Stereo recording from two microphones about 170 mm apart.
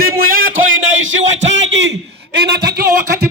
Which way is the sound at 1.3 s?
90° right.